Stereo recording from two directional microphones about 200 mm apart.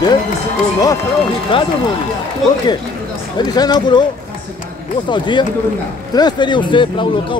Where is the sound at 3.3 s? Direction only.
20° left (ahead or behind).